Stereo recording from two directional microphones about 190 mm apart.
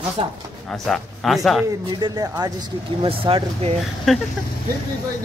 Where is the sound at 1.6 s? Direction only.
20° right (ahead or behind).